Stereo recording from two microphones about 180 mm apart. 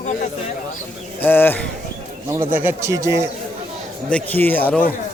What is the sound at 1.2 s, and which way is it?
Speech, 10° left (ahead or behind).